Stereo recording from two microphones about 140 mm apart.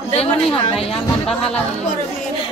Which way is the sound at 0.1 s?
45° left (ahead or behind).